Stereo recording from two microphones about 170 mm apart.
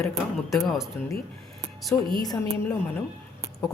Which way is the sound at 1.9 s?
10° left (ahead or behind).